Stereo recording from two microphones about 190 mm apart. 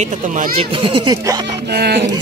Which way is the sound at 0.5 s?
30° right (ahead or behind).